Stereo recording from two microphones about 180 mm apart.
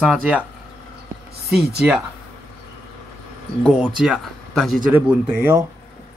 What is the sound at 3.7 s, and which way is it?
Speech, centre (ahead or behind).